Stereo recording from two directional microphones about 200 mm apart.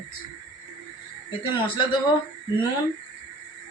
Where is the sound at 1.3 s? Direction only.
25° left (ahead or behind).